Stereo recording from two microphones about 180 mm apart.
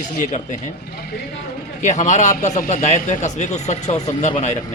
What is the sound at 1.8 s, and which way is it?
Speech, 40° left (ahead or behind).